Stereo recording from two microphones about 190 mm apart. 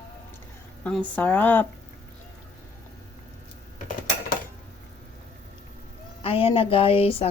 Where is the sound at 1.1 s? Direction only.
10° left (ahead or behind).